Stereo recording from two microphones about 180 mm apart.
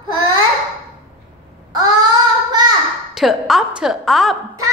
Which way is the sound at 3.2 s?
Centre (ahead or behind).